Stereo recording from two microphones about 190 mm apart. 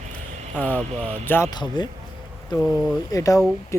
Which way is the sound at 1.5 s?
25° left (ahead or behind).